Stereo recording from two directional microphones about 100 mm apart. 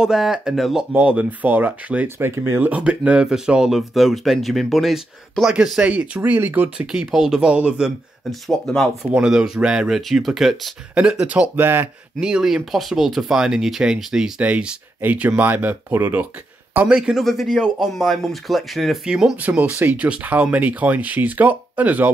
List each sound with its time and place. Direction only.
0.0 s speech: 5° right (ahead or behind)
0.9 s speech: 15° right (ahead or behind)
2.7 s speech: 10° right (ahead or behind)
6.9 s speech: 5° right (ahead or behind)
8.3 s speech: 5° left (ahead or behind)
9.1 s speech: 10° right (ahead or behind)
12.2 s speech: 10° right (ahead or behind)
17.2 s speech: centre (ahead or behind); by 22.1 s 15° right (ahead or behind)